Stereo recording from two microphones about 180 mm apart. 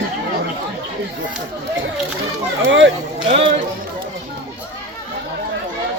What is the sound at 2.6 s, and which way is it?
Speech, 90° right.